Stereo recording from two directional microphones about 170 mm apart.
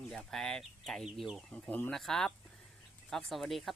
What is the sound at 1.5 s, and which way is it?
Speech, 10° left (ahead or behind).